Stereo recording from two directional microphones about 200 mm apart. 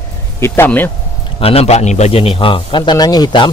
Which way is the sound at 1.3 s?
30° left (ahead or behind).